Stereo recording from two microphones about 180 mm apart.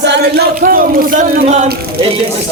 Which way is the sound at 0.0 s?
70° right (ahead or behind).